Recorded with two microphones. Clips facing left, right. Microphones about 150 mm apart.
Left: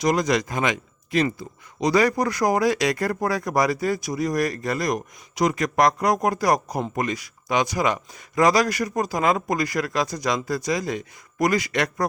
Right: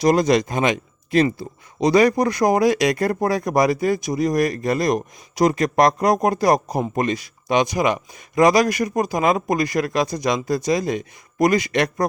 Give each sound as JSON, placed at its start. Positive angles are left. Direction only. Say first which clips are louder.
{"t": 0.0, "sound": "speech", "louder": "right 5 dB", "side_deg": -30}